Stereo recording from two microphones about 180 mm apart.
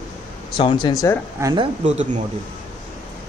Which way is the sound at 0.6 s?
25° left (ahead or behind).